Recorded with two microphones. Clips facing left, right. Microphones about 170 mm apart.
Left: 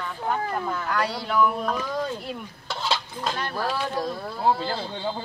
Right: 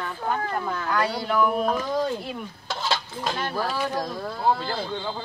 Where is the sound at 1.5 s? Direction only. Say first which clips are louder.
Right 3 dB; 25° right (ahead or behind).